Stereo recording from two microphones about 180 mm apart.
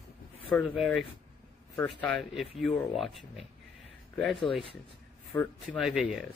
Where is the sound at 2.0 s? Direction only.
5° left (ahead or behind).